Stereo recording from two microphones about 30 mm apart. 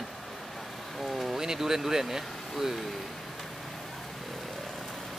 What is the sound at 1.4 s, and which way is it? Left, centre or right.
Speech, centre.